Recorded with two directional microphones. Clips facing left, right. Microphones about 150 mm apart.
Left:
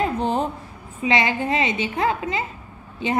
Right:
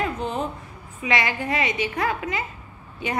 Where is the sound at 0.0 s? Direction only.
35° left (ahead or behind).